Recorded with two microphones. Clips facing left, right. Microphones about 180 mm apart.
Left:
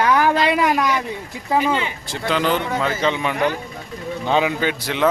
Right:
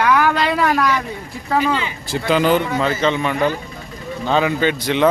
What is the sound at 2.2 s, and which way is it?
Speech, 10° right (ahead or behind).